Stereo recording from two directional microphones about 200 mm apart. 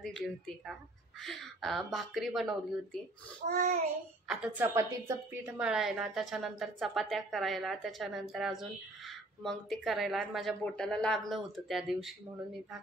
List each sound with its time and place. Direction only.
1.2 s a woman's voice: centre (ahead or behind)
3.4 s child singing: 45° right (ahead or behind)
4.3 s a woman's voice: 5° right (ahead or behind)